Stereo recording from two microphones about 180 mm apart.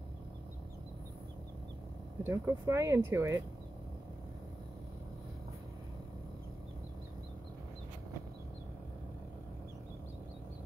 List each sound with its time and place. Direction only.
2.2 s speech: 15° right (ahead or behind)